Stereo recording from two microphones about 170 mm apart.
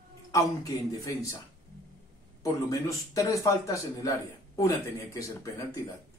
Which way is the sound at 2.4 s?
20° left (ahead or behind).